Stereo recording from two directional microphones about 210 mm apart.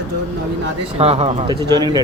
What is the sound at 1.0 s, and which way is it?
Speech, 30° right (ahead or behind).